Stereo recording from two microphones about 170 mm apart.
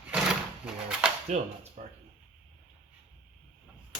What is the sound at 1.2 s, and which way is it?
Speech, 40° right (ahead or behind).